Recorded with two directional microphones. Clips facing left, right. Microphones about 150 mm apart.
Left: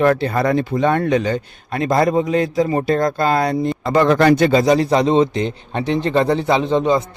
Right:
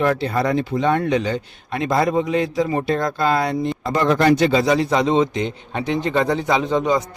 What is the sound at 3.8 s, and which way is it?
A man's voice, 70° left (ahead or behind).